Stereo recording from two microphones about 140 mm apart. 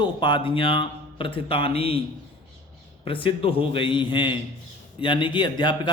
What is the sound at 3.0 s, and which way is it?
Speech, 40° left (ahead or behind).